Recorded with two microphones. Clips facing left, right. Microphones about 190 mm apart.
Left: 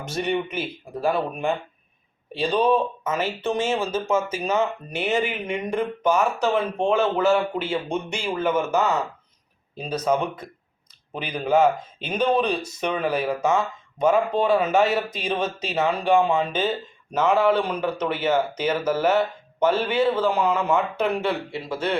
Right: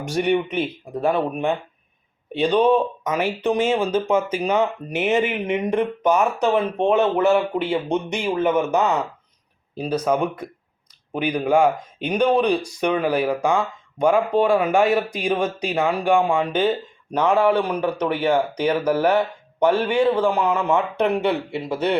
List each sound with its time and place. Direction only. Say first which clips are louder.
0.0 s speech: right 5 dB; 15° right (ahead or behind)